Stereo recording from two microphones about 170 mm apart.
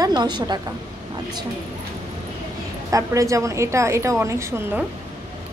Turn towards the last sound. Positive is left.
turn(degrees=-15)  # may be behind; listen again after turning